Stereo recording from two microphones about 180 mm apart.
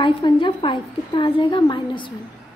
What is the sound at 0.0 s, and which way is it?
A woman's voice, 25° left (ahead or behind).